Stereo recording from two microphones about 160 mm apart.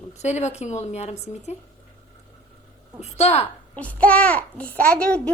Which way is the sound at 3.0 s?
40° left (ahead or behind).